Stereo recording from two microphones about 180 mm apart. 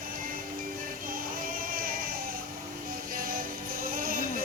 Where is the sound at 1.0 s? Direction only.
50° right (ahead or behind).